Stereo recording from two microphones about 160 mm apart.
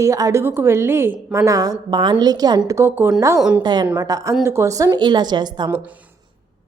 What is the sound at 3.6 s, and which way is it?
A woman's voice, 25° right (ahead or behind).